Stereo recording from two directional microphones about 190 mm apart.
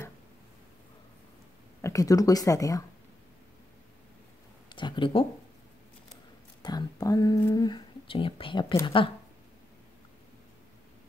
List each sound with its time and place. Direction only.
1.8 s speech: 15° left (ahead or behind)
4.6 s a sound: 25° left (ahead or behind)
6.6 s a woman's voice: 20° left (ahead or behind)